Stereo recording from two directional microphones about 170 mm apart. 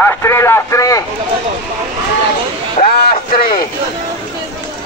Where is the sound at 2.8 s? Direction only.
65° left (ahead or behind).